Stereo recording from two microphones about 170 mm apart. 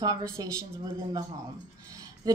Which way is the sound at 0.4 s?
25° right (ahead or behind).